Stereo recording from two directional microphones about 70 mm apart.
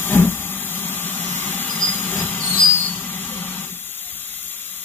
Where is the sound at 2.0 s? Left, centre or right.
Left.